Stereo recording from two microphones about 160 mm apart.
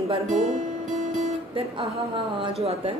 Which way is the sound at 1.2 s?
40° right (ahead or behind).